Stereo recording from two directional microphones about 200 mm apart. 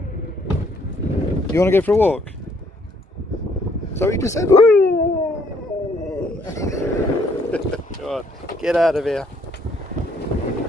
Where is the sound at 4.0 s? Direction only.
15° left (ahead or behind).